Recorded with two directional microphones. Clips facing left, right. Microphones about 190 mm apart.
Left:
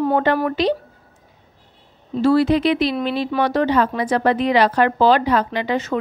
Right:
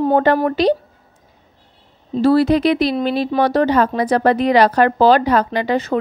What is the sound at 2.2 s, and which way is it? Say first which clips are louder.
Speech: right 2 dB; 35° right (ahead or behind).